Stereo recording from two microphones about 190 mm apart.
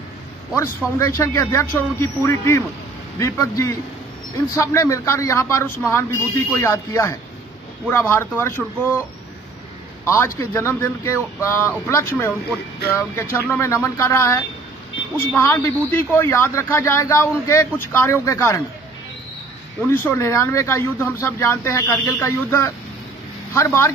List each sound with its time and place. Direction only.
0.6 s a man's voice: 15° left (ahead or behind)
10.0 s a man's voice: 15° left (ahead or behind)
19.9 s a man's voice: 10° left (ahead or behind)